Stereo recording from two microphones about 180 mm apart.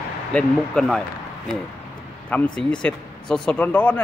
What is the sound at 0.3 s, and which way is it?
Speech, 5° left (ahead or behind).